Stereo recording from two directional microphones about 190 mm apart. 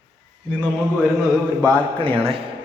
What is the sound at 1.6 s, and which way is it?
Speech, 25° right (ahead or behind).